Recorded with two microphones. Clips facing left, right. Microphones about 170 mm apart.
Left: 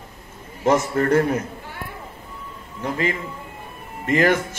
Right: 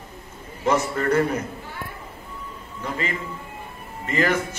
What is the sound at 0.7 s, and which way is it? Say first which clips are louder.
Speech: left 3 dB; 50° left (ahead or behind).